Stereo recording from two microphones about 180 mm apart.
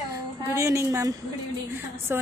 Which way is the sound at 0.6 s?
15° right (ahead or behind).